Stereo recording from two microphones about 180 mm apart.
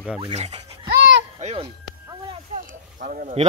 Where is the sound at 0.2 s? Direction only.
35° right (ahead or behind).